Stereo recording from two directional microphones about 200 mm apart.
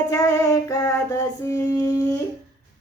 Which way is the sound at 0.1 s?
15° left (ahead or behind).